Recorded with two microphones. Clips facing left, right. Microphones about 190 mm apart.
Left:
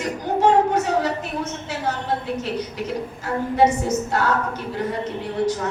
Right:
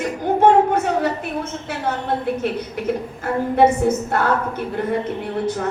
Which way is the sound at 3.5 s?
55° right (ahead or behind).